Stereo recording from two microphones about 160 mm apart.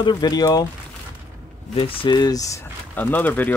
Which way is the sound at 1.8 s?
30° left (ahead or behind).